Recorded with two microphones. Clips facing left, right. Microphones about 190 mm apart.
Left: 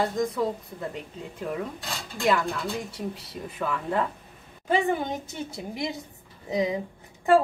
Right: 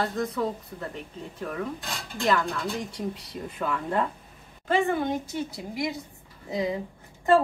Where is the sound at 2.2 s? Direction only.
10° left (ahead or behind).